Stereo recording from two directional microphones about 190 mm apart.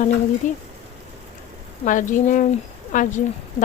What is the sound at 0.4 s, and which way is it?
Speech, 40° left (ahead or behind).